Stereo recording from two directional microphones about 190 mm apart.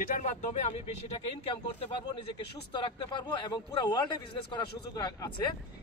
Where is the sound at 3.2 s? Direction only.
20° left (ahead or behind).